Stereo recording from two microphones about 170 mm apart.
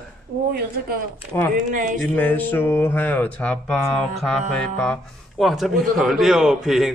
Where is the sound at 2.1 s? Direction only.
10° left (ahead or behind).